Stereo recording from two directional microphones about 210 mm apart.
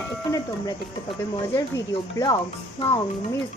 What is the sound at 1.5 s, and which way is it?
Speech, 15° left (ahead or behind).